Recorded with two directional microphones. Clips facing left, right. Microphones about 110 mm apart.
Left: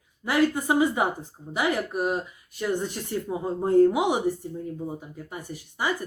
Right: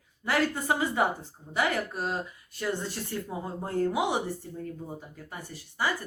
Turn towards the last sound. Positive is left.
turn(degrees=15)  # may be behind; listen again after turning